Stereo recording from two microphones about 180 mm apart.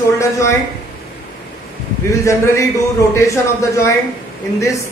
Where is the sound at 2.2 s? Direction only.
15° left (ahead or behind).